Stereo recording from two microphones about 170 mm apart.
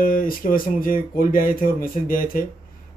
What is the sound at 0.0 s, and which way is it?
Speech, 55° left (ahead or behind).